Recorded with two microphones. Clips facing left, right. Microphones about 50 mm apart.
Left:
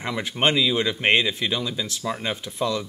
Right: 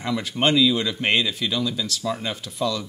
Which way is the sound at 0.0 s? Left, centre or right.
Left.